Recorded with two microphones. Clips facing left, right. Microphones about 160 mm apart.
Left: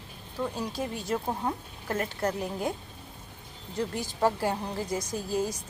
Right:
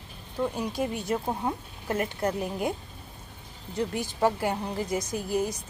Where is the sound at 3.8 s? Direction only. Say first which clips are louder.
Right 1 dB; 20° right (ahead or behind).